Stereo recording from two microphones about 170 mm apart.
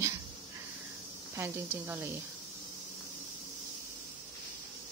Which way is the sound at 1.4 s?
15° right (ahead or behind).